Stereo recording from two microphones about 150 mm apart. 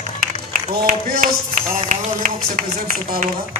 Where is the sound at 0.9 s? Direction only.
60° right (ahead or behind).